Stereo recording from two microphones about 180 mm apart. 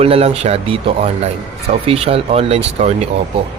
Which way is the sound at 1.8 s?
30° right (ahead or behind).